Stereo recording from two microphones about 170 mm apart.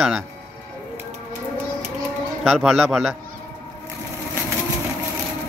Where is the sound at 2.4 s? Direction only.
Centre (ahead or behind).